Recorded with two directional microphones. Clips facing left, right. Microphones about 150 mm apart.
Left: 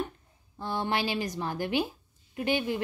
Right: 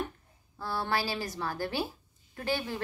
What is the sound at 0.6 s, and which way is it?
A woman's voice, 20° left (ahead or behind).